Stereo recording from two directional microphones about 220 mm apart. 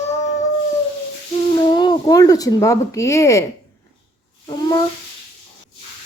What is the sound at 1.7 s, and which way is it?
Speech, 20° left (ahead or behind).